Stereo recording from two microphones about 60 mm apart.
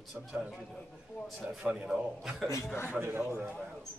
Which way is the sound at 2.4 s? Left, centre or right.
Left.